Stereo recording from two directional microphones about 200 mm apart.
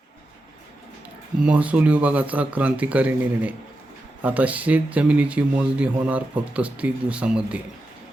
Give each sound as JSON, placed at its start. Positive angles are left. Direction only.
{"t": 1.4, "sound": "speech", "side_deg": -5}